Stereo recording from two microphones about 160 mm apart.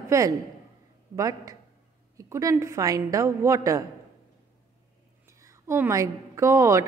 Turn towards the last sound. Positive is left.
turn(degrees=-20)  # may be behind; listen again after turning